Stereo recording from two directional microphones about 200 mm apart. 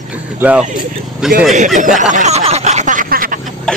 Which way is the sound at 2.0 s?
40° right (ahead or behind).